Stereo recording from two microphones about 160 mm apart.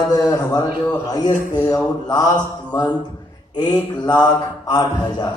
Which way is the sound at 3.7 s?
25° left (ahead or behind).